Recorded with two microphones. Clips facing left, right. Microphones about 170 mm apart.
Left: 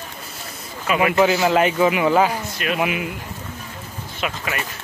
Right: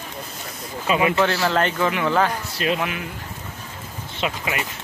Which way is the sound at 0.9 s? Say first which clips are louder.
Left 1 dB; 25° right (ahead or behind).